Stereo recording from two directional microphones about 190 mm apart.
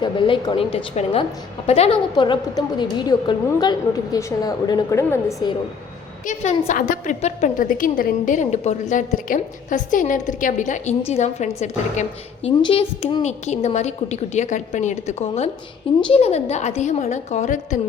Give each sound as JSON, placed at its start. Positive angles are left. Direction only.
{"t": 0.0, "sound": "a woman's voice", "side_deg": 25}
{"t": 6.2, "sound": "a woman's voice", "side_deg": 40}